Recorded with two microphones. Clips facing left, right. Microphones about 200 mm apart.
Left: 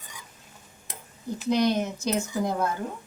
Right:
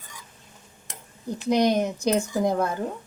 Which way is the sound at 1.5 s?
15° right (ahead or behind).